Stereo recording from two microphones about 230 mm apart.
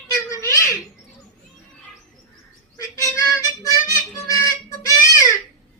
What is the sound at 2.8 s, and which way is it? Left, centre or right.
Harmonica, centre.